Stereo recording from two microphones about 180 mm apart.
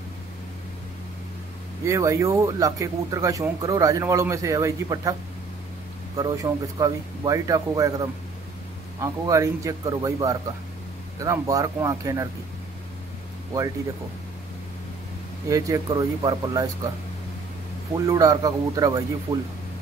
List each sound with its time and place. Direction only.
1.9 s speech: 15° right (ahead or behind)
6.1 s speech: 20° right (ahead or behind)
15.5 s speech: 20° right (ahead or behind)
17.9 s speech: 20° right (ahead or behind)